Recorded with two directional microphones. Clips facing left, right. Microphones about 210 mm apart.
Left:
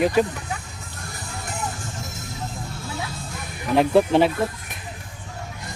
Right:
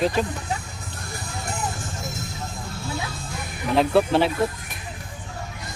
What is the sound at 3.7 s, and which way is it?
Speech, 15° left (ahead or behind).